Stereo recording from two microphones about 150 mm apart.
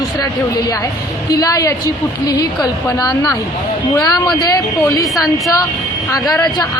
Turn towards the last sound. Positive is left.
turn(degrees=25)  # may be behind; listen again after turning